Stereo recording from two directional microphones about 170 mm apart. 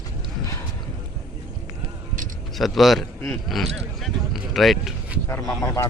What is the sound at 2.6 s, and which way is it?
Speech, centre (ahead or behind).